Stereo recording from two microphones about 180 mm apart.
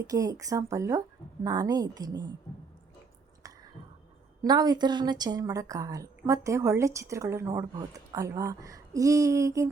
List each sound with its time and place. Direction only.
0.0 s a woman's voice: 20° right (ahead or behind)
3.4 s a sound: 20° right (ahead or behind)
4.4 s a woman's voice: 20° right (ahead or behind)